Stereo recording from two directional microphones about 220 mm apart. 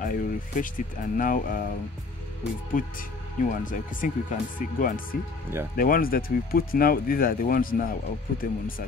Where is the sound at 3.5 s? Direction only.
35° left (ahead or behind).